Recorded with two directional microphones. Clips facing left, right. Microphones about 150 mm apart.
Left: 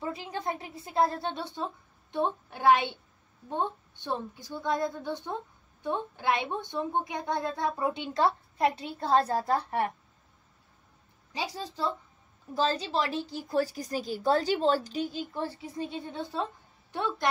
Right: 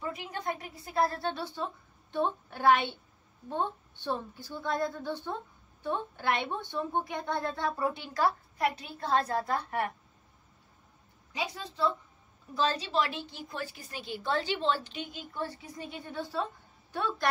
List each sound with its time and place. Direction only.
0.0 s a woman's voice: 25° left (ahead or behind)
11.3 s a woman's voice: 30° left (ahead or behind)